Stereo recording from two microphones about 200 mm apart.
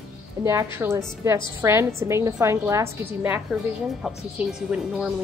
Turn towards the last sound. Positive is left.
turn(degrees=-5)  # may be behind; listen again after turning